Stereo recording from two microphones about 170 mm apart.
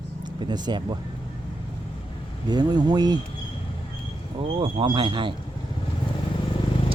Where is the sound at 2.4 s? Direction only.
25° right (ahead or behind).